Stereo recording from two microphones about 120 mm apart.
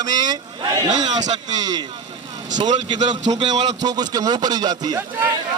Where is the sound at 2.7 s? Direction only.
75° right (ahead or behind).